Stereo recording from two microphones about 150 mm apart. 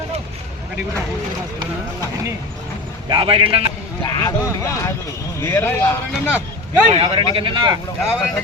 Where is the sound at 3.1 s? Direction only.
35° right (ahead or behind).